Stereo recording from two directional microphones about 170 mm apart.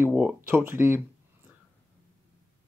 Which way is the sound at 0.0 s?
5° right (ahead or behind).